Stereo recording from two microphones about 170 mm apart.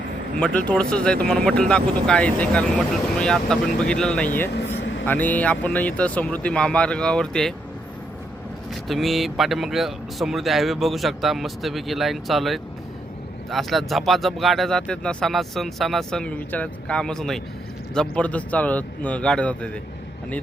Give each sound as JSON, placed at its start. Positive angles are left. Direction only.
{"t": 0.3, "sound": "speech", "side_deg": 5}
{"t": 4.5, "sound": "vehicle", "side_deg": 90}
{"t": 5.0, "sound": "speech", "side_deg": 10}
{"t": 8.9, "sound": "speech", "side_deg": 0}